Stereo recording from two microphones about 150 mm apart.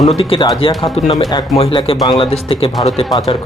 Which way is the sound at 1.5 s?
40° left (ahead or behind).